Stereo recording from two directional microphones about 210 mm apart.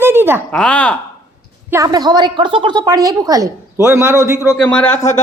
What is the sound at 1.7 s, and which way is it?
A woman's voice, 15° right (ahead or behind).